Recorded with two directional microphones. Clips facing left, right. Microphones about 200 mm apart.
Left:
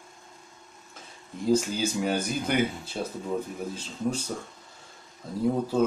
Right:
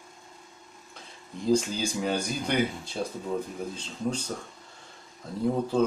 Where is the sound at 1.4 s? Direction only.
5° left (ahead or behind).